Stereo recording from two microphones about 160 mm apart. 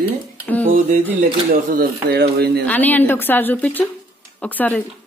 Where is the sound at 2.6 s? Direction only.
10° left (ahead or behind).